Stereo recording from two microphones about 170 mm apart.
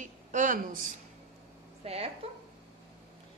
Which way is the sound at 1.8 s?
35° right (ahead or behind).